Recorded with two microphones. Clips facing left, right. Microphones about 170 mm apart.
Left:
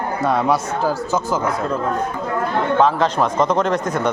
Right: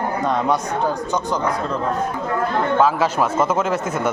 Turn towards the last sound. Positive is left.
turn(degrees=-5)  # may be behind; listen again after turning